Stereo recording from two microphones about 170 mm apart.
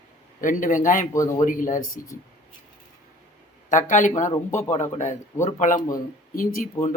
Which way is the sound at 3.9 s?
45° left (ahead or behind).